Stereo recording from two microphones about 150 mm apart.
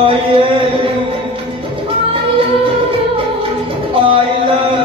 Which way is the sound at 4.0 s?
35° right (ahead or behind).